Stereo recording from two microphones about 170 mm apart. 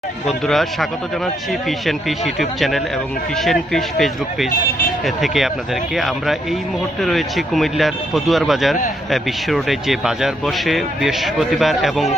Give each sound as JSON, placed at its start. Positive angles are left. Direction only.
{"t": 0.3, "sound": "speech", "side_deg": 0}
{"t": 4.5, "sound": "speech", "side_deg": 55}
{"t": 5.0, "sound": "speech", "side_deg": 0}